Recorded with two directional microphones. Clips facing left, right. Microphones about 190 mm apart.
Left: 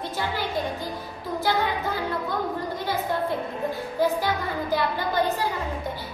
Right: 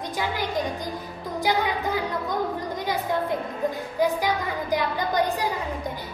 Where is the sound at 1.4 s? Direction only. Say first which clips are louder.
Right 1 dB; 15° right (ahead or behind).